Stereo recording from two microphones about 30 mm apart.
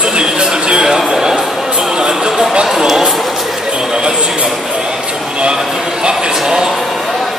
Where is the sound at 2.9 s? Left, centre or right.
Centre.